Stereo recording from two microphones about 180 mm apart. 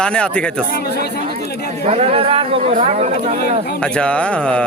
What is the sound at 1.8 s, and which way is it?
Speech, 35° right (ahead or behind).